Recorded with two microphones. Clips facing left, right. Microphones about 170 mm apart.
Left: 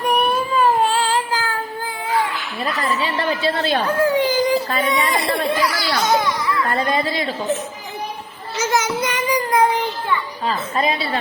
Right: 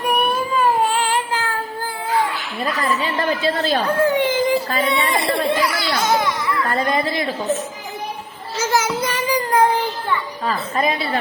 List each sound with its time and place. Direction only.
0.0 s child singing: 10° right (ahead or behind)
2.8 s a child's voice: 40° right (ahead or behind); by 6.0 s 25° right (ahead or behind)
6.2 s music: 25° right (ahead or behind)
6.9 s a woman's voice: 25° left (ahead or behind)
8.5 s child singing: 30° right (ahead or behind)
10.4 s a woman's voice: 25° left (ahead or behind)